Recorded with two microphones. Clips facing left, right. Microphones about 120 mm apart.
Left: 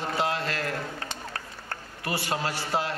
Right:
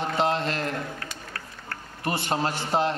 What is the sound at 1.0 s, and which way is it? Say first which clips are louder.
Run: left 2 dB; 25° left (ahead or behind).